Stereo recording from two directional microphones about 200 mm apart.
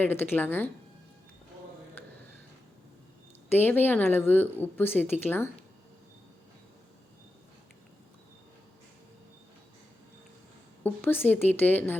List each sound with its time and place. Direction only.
0.0 s a woman's voice: 10° left (ahead or behind)
3.5 s a woman's voice: 10° left (ahead or behind)
10.8 s a woman's voice: 10° left (ahead or behind)